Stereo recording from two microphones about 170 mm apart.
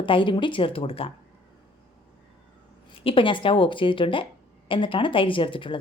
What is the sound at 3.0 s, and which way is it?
A woman's voice, 30° left (ahead or behind).